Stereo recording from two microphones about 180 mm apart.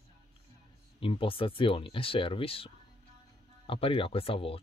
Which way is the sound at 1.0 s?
30° left (ahead or behind).